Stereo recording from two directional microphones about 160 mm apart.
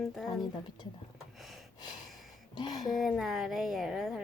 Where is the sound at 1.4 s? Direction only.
Centre (ahead or behind).